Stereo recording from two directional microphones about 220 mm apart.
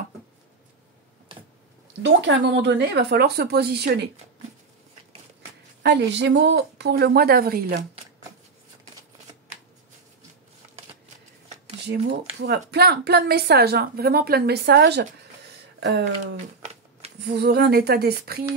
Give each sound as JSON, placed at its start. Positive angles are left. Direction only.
{"t": 2.0, "sound": "speech", "side_deg": -55}
{"t": 5.8, "sound": "speech", "side_deg": -50}
{"t": 11.9, "sound": "speech", "side_deg": -50}